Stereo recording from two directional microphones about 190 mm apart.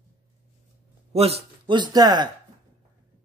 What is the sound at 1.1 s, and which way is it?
Speech, 30° right (ahead or behind).